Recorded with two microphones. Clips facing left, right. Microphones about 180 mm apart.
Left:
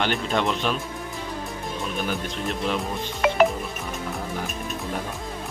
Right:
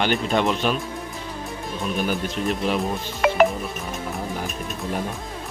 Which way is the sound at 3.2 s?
55° right (ahead or behind).